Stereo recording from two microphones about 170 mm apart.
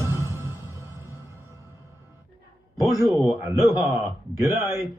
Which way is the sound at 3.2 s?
10° right (ahead or behind).